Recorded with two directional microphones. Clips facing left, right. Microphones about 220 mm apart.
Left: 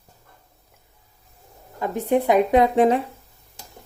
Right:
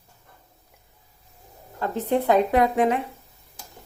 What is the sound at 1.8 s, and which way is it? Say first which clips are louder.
Speech: left 2 dB; 15° left (ahead or behind).